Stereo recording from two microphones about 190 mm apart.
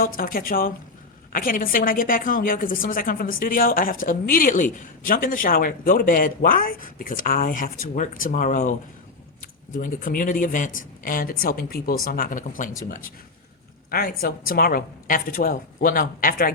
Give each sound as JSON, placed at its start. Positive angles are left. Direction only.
{"t": 0.2, "sound": "speech", "side_deg": 50}
{"t": 9.7, "sound": "speech", "side_deg": 45}